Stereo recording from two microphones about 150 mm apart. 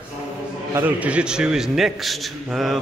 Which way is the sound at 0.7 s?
10° right (ahead or behind).